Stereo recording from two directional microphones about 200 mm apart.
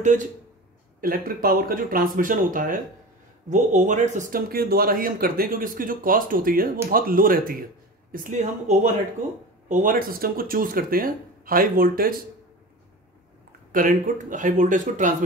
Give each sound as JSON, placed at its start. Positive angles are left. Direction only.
{"t": 1.0, "sound": "speech", "side_deg": -45}
{"t": 13.7, "sound": "speech", "side_deg": -45}